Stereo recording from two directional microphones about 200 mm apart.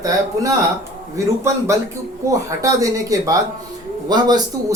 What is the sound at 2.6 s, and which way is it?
Speech, 15° right (ahead or behind).